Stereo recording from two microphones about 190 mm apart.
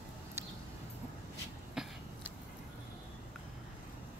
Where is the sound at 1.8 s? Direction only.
5° right (ahead or behind).